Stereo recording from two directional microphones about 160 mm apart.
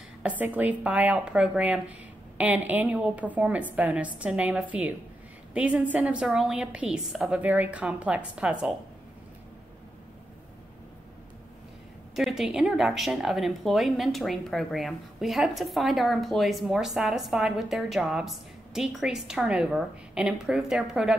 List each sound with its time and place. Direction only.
0.2 s a woman's voice: 10° right (ahead or behind)
12.2 s a woman's voice: centre (ahead or behind)